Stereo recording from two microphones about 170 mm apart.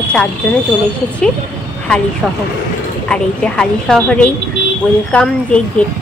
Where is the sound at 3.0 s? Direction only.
5° left (ahead or behind).